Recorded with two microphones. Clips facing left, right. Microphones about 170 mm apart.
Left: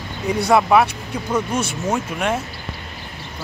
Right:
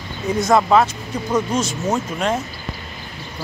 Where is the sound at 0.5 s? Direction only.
10° left (ahead or behind).